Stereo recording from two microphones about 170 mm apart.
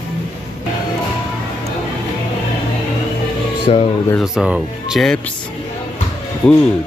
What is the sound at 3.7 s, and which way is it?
Speech, 35° left (ahead or behind).